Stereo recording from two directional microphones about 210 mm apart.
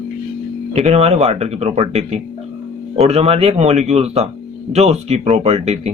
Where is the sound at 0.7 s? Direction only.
30° right (ahead or behind).